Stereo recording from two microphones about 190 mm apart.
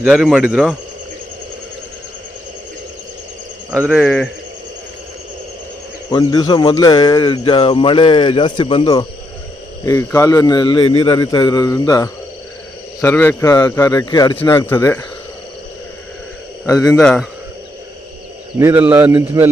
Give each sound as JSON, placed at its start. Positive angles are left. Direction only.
{"t": 0.0, "sound": "speech", "side_deg": -5}
{"t": 4.0, "sound": "speech", "side_deg": 10}
{"t": 6.1, "sound": "speech", "side_deg": 20}
{"t": 17.0, "sound": "speech", "side_deg": 5}
{"t": 18.6, "sound": "speech", "side_deg": -10}